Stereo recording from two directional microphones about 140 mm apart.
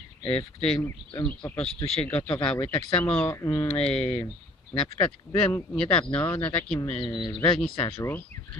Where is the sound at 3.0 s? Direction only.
15° left (ahead or behind).